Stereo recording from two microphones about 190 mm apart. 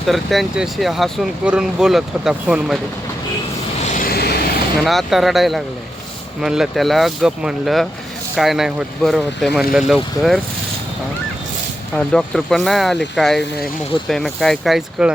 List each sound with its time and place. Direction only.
0.1 s speech: centre (ahead or behind)
3.8 s vehicle: 45° left (ahead or behind)
4.8 s speech: centre (ahead or behind)
11.9 s speech: 5° left (ahead or behind)